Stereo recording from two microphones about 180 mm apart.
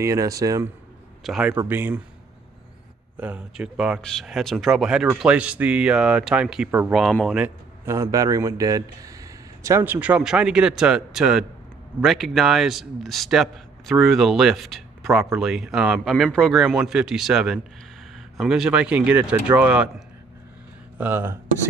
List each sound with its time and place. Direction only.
0.0 s a man's voice: 15° right (ahead or behind)
1.2 s a man's voice: centre (ahead or behind)
1.5 s a man's voice: 15° right (ahead or behind)
3.2 s a man's voice: 10° right (ahead or behind)
21.0 s a man's voice: 10° right (ahead or behind)